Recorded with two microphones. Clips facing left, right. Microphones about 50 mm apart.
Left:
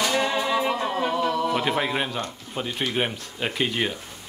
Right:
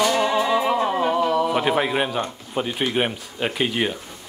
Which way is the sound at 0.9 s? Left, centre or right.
Centre.